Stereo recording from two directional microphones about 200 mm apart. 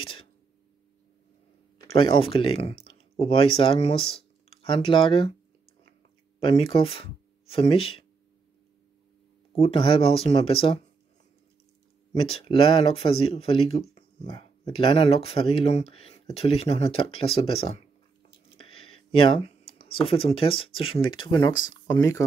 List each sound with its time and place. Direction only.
1.9 s speech: 25° left (ahead or behind)
6.4 s speech: 25° left (ahead or behind)
9.5 s speech: 30° left (ahead or behind)
12.1 s speech: 30° left (ahead or behind)